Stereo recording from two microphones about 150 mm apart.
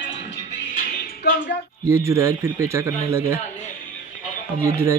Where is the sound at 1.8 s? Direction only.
20° right (ahead or behind).